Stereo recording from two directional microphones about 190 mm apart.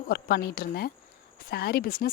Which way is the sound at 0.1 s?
55° left (ahead or behind).